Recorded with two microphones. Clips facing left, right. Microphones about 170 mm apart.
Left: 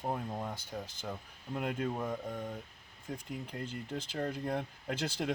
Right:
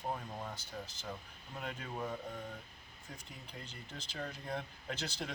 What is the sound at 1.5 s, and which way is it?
Speech, 60° left (ahead or behind).